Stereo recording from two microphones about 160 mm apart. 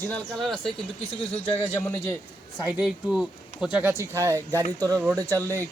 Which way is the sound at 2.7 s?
5° right (ahead or behind).